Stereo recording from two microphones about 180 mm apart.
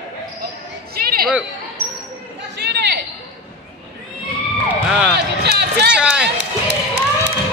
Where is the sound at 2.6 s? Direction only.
70° right (ahead or behind).